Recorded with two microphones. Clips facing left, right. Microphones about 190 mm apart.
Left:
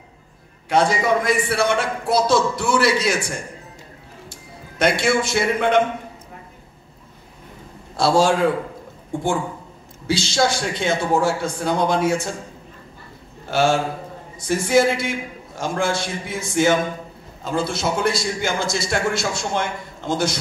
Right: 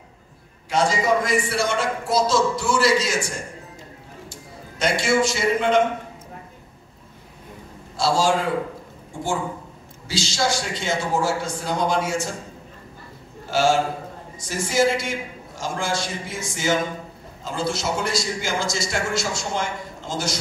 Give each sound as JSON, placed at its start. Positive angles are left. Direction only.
{"t": 0.7, "sound": "a man's voice", "side_deg": 60}
{"t": 4.3, "sound": "a man's voice", "side_deg": 60}
{"t": 7.9, "sound": "a man's voice", "side_deg": 60}
{"t": 13.5, "sound": "a man's voice", "side_deg": 60}